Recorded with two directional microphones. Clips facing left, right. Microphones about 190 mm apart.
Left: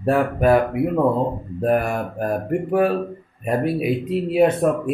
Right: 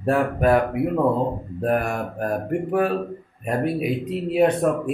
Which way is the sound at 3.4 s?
5° left (ahead or behind).